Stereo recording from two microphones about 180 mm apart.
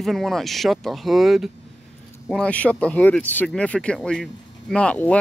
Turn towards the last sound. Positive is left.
turn(degrees=10)  # may be behind; listen again after turning